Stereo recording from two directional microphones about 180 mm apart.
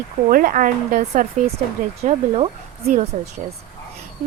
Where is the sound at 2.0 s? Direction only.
35° right (ahead or behind).